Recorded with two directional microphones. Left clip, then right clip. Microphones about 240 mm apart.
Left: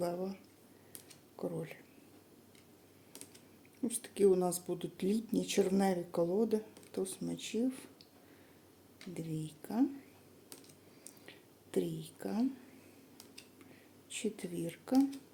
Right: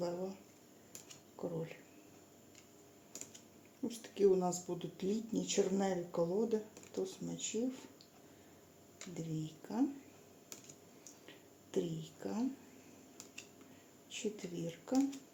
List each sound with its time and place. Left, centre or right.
0.0 s a sound: left
1.4 s speech: left
3.8 s speech: left
9.1 s speech: left
11.3 s a sound: left
14.1 s speech: left